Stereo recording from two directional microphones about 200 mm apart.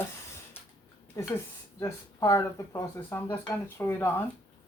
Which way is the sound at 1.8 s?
15° left (ahead or behind).